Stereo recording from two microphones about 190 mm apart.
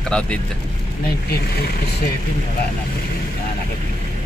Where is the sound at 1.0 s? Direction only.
55° left (ahead or behind).